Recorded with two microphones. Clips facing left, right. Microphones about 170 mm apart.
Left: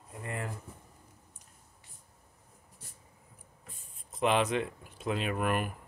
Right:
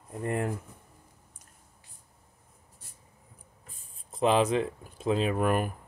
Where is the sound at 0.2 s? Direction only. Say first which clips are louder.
Right 8 dB; 55° right (ahead or behind).